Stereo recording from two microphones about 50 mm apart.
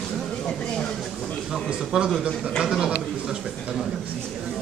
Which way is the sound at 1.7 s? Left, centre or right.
Centre.